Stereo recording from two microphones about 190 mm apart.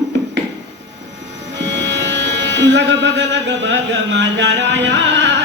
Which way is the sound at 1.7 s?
70° right (ahead or behind).